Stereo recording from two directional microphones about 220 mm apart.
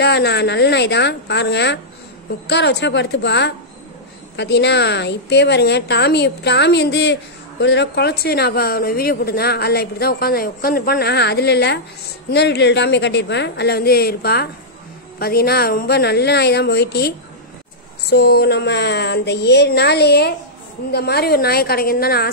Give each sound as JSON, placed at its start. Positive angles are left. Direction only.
{"t": 0.0, "sound": "a woman's voice", "side_deg": 50}
{"t": 18.1, "sound": "a woman's voice", "side_deg": 50}